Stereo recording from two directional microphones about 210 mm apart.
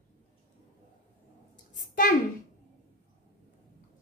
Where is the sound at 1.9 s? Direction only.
40° left (ahead or behind).